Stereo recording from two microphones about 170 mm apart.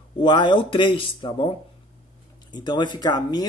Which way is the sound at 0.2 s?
25° left (ahead or behind).